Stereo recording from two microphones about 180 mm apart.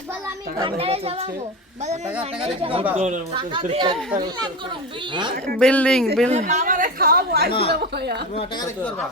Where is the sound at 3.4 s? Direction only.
25° right (ahead or behind).